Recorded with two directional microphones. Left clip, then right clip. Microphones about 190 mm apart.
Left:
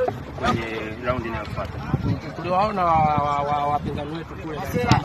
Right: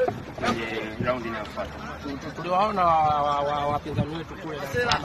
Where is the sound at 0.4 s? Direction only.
45° right (ahead or behind).